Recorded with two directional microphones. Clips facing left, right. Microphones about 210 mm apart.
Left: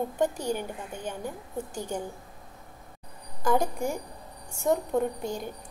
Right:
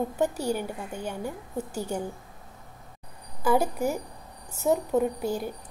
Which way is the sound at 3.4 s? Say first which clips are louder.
Right 2 dB; 5° right (ahead or behind).